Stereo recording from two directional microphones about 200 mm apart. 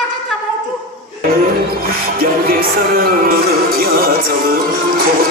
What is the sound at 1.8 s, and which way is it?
Music, 45° right (ahead or behind).